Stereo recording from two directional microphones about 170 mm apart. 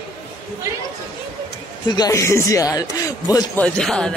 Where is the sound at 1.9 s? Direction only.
20° left (ahead or behind).